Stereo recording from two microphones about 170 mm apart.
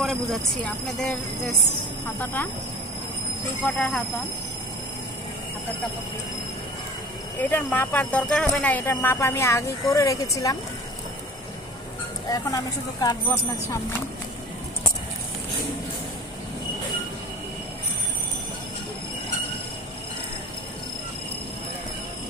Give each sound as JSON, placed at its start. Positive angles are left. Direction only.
{"t": 0.0, "sound": "speech", "side_deg": 0}
{"t": 2.1, "sound": "speech", "side_deg": 10}
{"t": 3.6, "sound": "speech", "side_deg": 5}
{"t": 7.4, "sound": "speech", "side_deg": 10}
{"t": 12.3, "sound": "speech", "side_deg": 20}